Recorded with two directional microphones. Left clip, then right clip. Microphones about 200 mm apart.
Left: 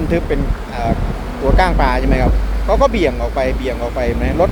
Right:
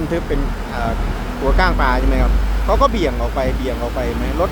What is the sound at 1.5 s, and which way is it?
Speech, 10° left (ahead or behind).